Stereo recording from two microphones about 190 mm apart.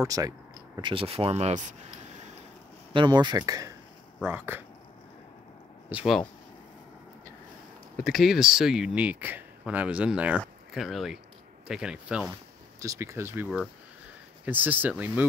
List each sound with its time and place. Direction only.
0.0 s speech: 20° right (ahead or behind); by 1.8 s 35° right (ahead or behind)
2.9 s speech: 25° right (ahead or behind)
5.9 s speech: 5° right (ahead or behind)
8.0 s speech: centre (ahead or behind)
12.8 s speech: 15° right (ahead or behind)